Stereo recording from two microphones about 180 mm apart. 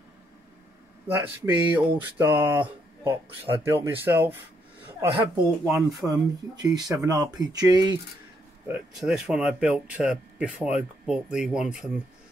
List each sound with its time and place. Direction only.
1.0 s speech: 15° right (ahead or behind)
4.8 s a sound: 10° right (ahead or behind)
5.7 s speech: centre (ahead or behind)
5.9 s speech: 20° right (ahead or behind)
8.6 s speech: 5° right (ahead or behind)